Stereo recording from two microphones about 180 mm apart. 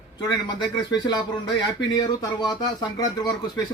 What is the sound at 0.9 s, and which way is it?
Speech, 25° left (ahead or behind).